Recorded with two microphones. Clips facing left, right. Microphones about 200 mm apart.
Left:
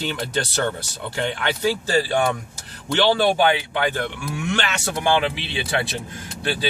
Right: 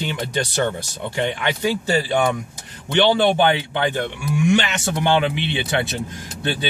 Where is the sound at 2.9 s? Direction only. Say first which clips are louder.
Right 2 dB; 20° right (ahead or behind).